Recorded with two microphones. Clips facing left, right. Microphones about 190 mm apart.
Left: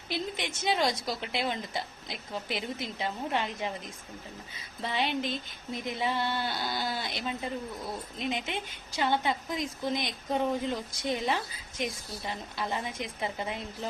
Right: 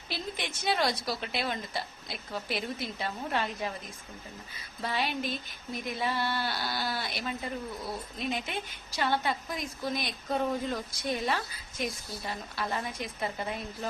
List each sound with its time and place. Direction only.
0.3 s a woman's voice: 20° left (ahead or behind)
4.8 s a woman's voice: 20° left (ahead or behind)